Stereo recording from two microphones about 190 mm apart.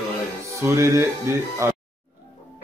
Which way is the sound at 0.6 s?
15° right (ahead or behind).